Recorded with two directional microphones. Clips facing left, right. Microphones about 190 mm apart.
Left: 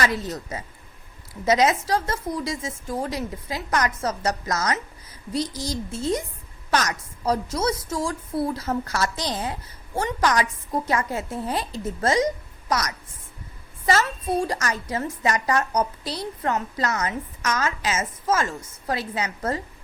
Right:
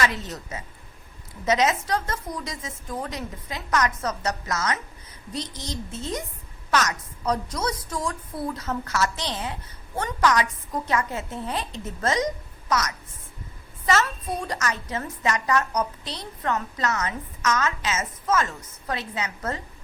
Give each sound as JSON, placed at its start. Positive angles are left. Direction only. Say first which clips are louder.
{"t": 1.5, "sound": "a woman's voice", "louder": "left 2 dB", "side_deg": 30}
{"t": 9.9, "sound": "a woman's voice", "louder": "even", "side_deg": 25}